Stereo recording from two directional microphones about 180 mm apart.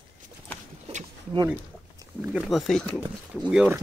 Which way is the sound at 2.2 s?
5° right (ahead or behind).